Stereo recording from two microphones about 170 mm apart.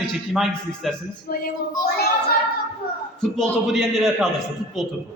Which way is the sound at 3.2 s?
Centre (ahead or behind).